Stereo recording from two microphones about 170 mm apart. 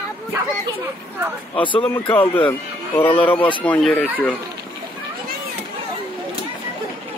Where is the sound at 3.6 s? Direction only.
10° left (ahead or behind).